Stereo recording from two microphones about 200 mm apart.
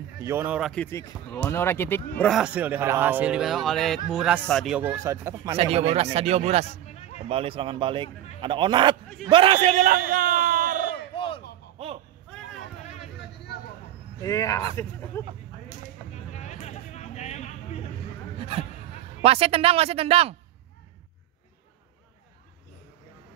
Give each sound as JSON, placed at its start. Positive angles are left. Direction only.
{"t": 0.2, "sound": "speech", "side_deg": -10}
{"t": 0.8, "sound": "speech", "side_deg": 15}
{"t": 5.6, "sound": "speech", "side_deg": -30}
{"t": 6.9, "sound": "a sound", "side_deg": 35}
{"t": 7.2, "sound": "a man's voice", "side_deg": -30}
{"t": 11.1, "sound": "a sound", "side_deg": 25}
{"t": 14.2, "sound": "speech", "side_deg": 15}
{"t": 16.3, "sound": "a sound", "side_deg": 35}
{"t": 18.4, "sound": "speech", "side_deg": -30}